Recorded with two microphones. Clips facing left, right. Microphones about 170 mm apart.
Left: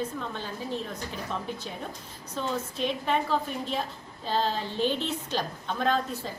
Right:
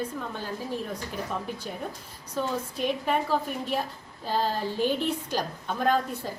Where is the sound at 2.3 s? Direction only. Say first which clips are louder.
Right 2 dB; 10° right (ahead or behind).